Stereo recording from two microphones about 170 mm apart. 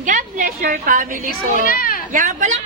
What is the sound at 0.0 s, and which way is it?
A woman's voice, 50° right (ahead or behind).